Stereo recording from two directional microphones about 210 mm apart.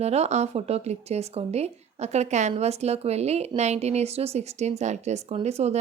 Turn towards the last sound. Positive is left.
turn(degrees=-30)  # may be behind; listen again after turning